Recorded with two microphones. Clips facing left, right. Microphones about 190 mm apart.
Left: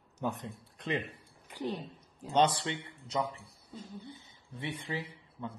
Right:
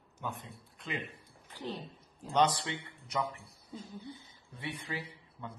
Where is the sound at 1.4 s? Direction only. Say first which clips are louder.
Left 4 dB; 15° left (ahead or behind).